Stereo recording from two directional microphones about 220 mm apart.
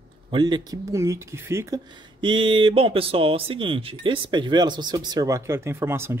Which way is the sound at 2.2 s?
20° right (ahead or behind).